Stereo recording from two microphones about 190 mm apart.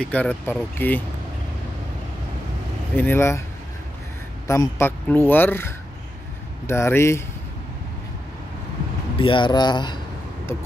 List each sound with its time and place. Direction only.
0.0 s speech: 10° left (ahead or behind)
3.0 s speech: 10° left (ahead or behind)
4.5 s speech: 15° left (ahead or behind)
9.2 s speech: 25° left (ahead or behind)